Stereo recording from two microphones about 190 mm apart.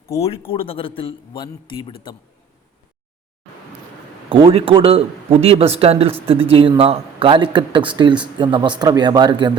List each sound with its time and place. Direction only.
0.1 s a man's voice: 30° left (ahead or behind)
4.3 s speech: 30° right (ahead or behind)